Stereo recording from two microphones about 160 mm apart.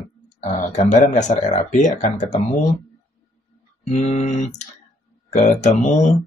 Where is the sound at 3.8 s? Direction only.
45° left (ahead or behind).